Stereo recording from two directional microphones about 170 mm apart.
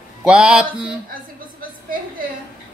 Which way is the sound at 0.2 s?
5° right (ahead or behind).